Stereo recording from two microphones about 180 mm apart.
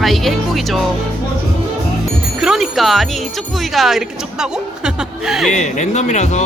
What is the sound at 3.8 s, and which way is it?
Speech, centre (ahead or behind).